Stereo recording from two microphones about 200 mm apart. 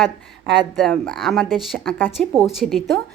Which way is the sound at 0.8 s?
Centre (ahead or behind).